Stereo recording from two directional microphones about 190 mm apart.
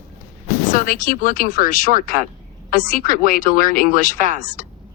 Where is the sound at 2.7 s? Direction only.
50° left (ahead or behind).